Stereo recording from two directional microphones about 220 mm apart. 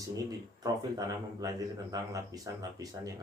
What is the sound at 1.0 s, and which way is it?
Speech, 15° right (ahead or behind).